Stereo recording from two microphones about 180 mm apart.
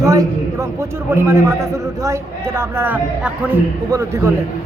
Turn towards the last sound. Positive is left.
turn(degrees=-15)  # may be behind; listen again after turning